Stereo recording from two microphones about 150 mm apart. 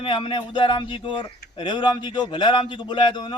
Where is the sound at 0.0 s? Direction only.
35° left (ahead or behind).